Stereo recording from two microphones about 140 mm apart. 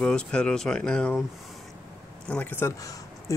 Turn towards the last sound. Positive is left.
turn(degrees=25)  # may be behind; listen again after turning